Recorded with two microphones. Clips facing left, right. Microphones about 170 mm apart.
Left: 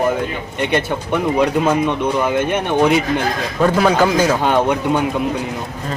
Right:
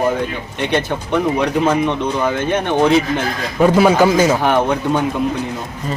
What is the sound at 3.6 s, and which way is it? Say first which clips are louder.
Speech: right 3 dB; 10° right (ahead or behind).